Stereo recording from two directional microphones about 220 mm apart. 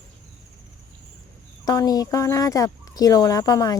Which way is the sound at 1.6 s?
15° left (ahead or behind).